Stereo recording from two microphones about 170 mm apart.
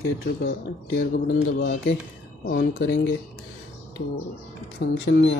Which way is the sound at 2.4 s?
65° left (ahead or behind).